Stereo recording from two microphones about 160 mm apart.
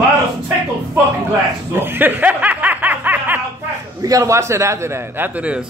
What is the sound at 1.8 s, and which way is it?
Snicker, 10° right (ahead or behind).